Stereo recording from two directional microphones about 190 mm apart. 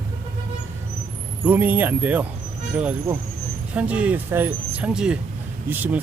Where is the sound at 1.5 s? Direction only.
10° right (ahead or behind).